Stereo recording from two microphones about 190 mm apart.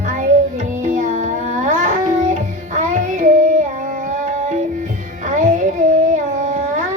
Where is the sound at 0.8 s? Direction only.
40° right (ahead or behind).